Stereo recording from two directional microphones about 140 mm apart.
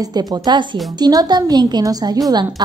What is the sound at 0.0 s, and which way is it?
Speech, 25° right (ahead or behind).